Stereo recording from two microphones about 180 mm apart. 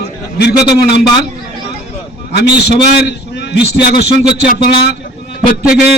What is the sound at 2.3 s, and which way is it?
A man's voice, 65° left (ahead or behind).